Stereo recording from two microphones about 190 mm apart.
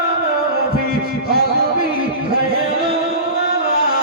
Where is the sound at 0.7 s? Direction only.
55° right (ahead or behind).